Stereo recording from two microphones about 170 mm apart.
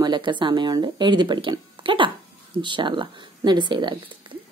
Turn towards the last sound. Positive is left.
turn(degrees=-25)  # may be behind; listen again after turning